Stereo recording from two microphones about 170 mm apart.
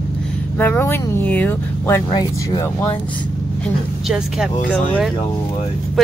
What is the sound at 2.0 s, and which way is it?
Speech, 25° left (ahead or behind).